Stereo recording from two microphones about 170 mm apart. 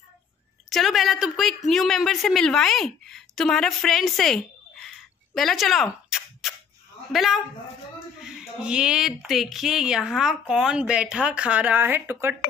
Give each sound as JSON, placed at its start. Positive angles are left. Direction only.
{"t": 0.7, "sound": "a woman's voice", "side_deg": 0}